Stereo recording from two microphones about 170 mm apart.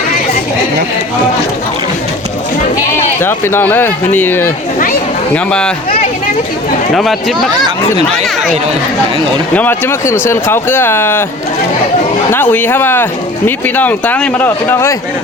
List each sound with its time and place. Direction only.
3.2 s speech: 15° left (ahead or behind)
6.9 s speech: centre (ahead or behind)
9.6 s speech: 10° left (ahead or behind)
12.3 s speech: 10° left (ahead or behind)